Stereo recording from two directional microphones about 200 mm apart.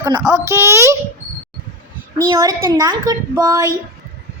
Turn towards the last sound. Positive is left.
turn(degrees=-15)  # may be behind; listen again after turning